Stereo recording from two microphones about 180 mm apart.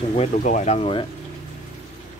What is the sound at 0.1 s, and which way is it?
Speech, 40° left (ahead or behind).